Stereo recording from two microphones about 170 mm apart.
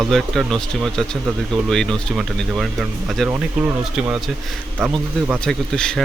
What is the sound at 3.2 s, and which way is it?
Speech, 15° right (ahead or behind).